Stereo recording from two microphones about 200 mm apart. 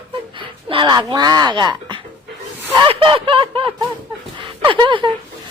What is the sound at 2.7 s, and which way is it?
Speech, 25° right (ahead or behind).